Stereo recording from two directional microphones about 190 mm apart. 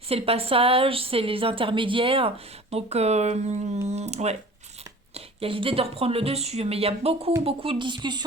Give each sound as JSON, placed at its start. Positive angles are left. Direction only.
{"t": 0.1, "sound": "a woman's voice", "side_deg": -30}